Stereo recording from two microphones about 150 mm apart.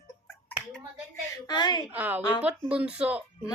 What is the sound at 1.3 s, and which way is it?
Speech, 30° left (ahead or behind).